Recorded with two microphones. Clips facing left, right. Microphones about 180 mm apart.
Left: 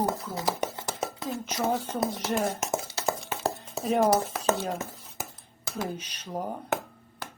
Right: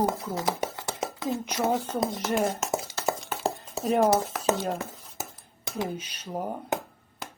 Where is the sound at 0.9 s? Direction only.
25° right (ahead or behind).